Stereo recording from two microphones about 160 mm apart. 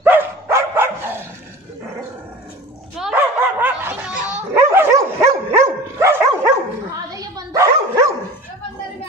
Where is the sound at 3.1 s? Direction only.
10° right (ahead or behind).